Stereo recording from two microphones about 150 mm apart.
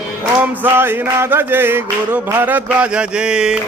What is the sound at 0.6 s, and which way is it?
Music, 15° right (ahead or behind).